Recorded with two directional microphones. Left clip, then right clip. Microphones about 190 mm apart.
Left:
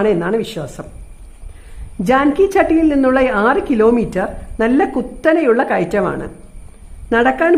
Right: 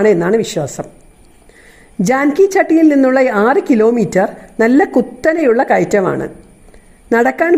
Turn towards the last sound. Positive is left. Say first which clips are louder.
# right 1 dB
turn(degrees=-20)  # may be behind; listen again after turning